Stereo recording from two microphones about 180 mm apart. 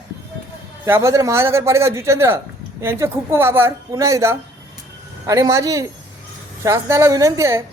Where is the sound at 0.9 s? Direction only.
15° right (ahead or behind).